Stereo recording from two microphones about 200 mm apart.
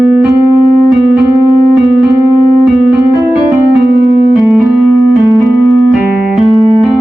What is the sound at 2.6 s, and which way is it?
Keyboard, centre (ahead or behind).